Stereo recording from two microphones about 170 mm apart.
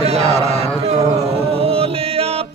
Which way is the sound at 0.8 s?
40° right (ahead or behind).